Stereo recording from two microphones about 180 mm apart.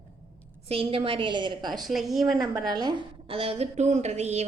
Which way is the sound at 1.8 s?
Centre (ahead or behind).